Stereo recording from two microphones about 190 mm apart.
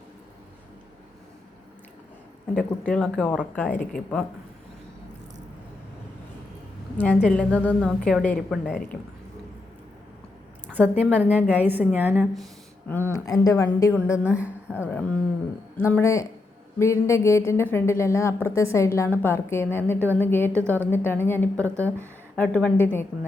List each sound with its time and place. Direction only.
2.6 s a woman's voice: 5° left (ahead or behind)
7.0 s a woman's voice: 5° left (ahead or behind)
11.0 s a woman's voice: 10° right (ahead or behind)
12.9 s a woman's voice: 15° left (ahead or behind)
14.3 s a woman's voice: 5° right (ahead or behind)
14.8 s a woman's voice: 5° left (ahead or behind)